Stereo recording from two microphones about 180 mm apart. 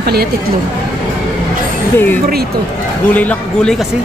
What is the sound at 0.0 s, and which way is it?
Speech, 60° right (ahead or behind).